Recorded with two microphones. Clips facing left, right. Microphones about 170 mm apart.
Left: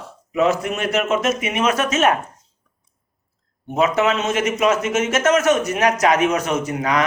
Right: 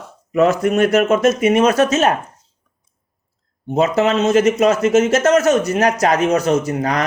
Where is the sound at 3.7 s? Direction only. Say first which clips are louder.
Right 3 dB; 35° right (ahead or behind).